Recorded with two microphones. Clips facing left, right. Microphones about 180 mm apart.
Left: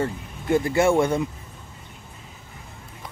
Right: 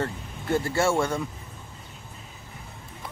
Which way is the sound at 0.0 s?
15° left (ahead or behind).